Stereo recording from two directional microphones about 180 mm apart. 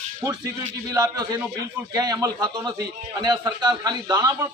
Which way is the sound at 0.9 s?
20° right (ahead or behind).